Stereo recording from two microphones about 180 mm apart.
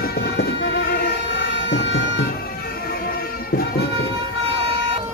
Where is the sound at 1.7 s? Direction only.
90° left.